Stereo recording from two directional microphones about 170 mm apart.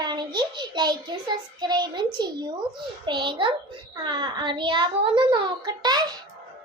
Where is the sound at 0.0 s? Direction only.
25° right (ahead or behind).